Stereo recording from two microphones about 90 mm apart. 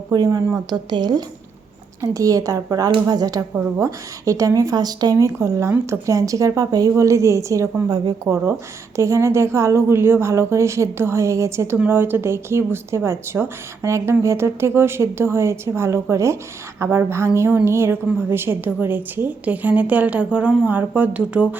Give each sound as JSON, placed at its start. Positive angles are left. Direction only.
{"t": 0.1, "sound": "a woman's voice", "side_deg": -40}
{"t": 0.9, "sound": "speech", "side_deg": -50}
{"t": 2.0, "sound": "a woman's voice", "side_deg": -40}
{"t": 3.5, "sound": "a woman's voice", "side_deg": -30}